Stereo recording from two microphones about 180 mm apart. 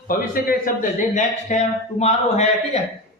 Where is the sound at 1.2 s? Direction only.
40° left (ahead or behind).